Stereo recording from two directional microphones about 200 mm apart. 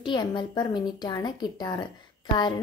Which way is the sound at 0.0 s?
20° left (ahead or behind).